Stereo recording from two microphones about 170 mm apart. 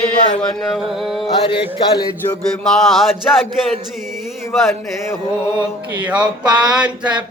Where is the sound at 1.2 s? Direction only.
30° left (ahead or behind).